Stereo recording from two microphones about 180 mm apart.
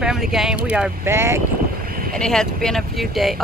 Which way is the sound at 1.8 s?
55° right (ahead or behind).